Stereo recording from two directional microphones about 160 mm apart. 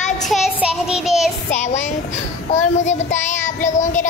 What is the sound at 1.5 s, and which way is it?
Speech, 45° left (ahead or behind).